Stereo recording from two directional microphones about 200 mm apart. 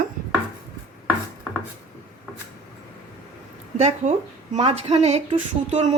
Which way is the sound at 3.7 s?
35° right (ahead or behind).